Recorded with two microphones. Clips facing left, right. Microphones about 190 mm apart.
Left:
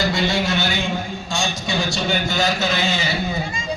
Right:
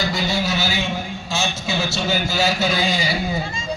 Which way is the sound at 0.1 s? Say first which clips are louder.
Left 2 dB; 5° right (ahead or behind).